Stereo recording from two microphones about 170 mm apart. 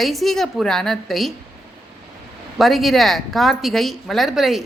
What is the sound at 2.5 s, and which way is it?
A woman's voice, centre (ahead or behind).